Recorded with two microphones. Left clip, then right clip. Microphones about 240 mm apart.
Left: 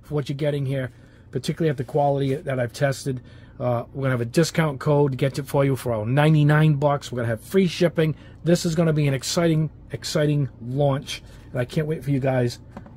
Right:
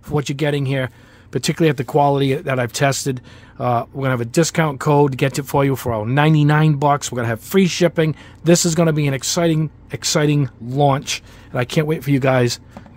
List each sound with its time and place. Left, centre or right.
0.1 s speech: right